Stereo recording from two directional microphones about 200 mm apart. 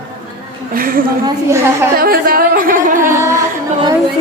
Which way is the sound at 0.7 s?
45° right (ahead or behind).